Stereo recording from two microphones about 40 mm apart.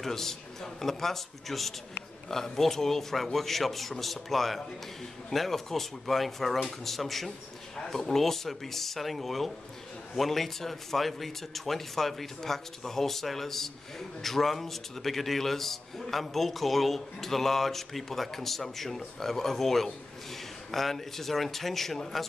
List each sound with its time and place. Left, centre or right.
0.0 s a man's voice: centre
7.2 s a sound: centre
7.9 s speech: centre